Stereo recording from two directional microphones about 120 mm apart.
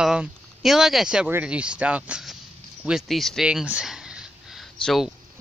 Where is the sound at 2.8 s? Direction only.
5° right (ahead or behind).